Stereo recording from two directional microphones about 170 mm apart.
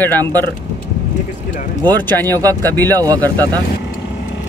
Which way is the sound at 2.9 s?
20° right (ahead or behind).